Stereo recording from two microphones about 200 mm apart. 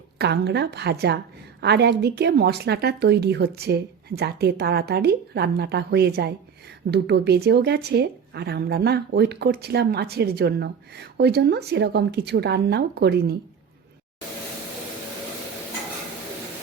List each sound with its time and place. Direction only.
0.2 s speech: 55° right (ahead or behind)